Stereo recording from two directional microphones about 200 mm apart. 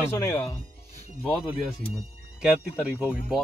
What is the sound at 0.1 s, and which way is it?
Speech, 15° left (ahead or behind).